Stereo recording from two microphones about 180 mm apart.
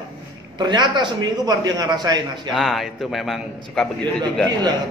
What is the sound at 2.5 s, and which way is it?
A man's voice, centre (ahead or behind).